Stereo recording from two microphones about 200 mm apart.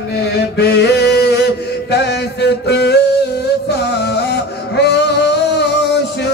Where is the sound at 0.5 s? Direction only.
55° left (ahead or behind).